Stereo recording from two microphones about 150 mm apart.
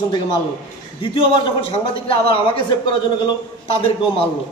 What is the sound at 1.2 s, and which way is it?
Speech, 35° left (ahead or behind).